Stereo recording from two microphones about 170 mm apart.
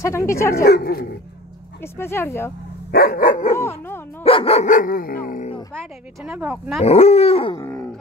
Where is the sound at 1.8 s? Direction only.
15° left (ahead or behind).